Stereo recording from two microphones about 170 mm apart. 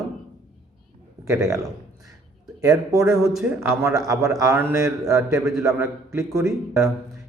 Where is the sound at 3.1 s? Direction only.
Centre (ahead or behind).